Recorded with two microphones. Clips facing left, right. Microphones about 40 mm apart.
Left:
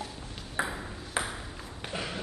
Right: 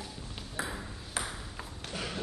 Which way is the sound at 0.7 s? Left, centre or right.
Centre.